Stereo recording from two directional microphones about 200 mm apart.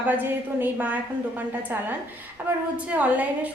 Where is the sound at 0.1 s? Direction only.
10° right (ahead or behind).